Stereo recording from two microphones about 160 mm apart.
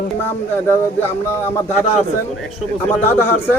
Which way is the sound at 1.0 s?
15° left (ahead or behind).